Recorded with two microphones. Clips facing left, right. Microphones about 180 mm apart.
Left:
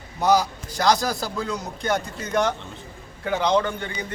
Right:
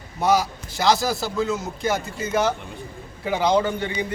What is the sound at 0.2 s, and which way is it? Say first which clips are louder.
A man's voice: left 1 dB; 5° right (ahead or behind).